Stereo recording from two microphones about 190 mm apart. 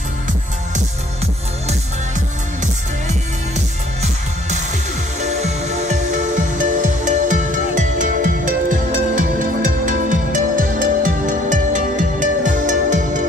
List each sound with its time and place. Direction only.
0.7 s music: 35° right (ahead or behind)